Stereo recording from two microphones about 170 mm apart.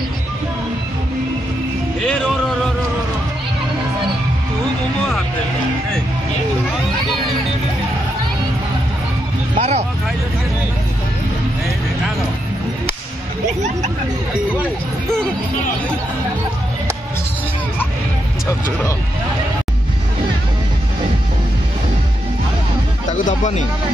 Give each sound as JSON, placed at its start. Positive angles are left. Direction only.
{"t": 9.6, "sound": "speech", "side_deg": -40}
{"t": 14.6, "sound": "speech", "side_deg": 5}
{"t": 23.2, "sound": "speech", "side_deg": 45}